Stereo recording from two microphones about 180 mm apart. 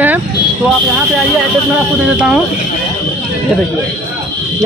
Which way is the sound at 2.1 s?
5° right (ahead or behind).